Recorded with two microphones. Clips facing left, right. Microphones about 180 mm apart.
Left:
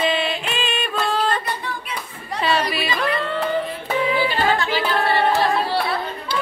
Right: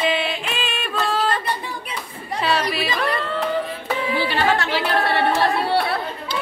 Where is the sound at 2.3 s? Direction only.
Centre (ahead or behind).